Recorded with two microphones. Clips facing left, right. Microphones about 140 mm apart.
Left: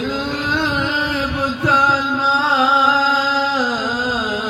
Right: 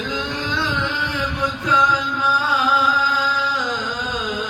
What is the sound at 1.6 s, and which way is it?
Music, 75° left (ahead or behind).